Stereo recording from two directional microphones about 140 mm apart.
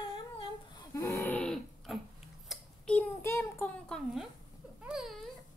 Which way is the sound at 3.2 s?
20° left (ahead or behind).